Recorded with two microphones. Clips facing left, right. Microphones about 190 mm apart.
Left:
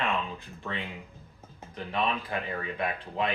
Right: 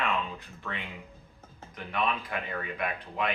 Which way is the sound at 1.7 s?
30° left (ahead or behind).